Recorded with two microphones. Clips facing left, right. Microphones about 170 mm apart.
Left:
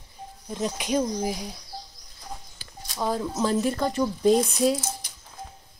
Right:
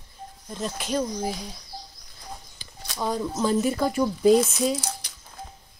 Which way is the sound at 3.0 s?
Centre (ahead or behind).